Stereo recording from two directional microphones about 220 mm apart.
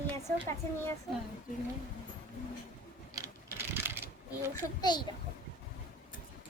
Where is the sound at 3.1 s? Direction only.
15° right (ahead or behind).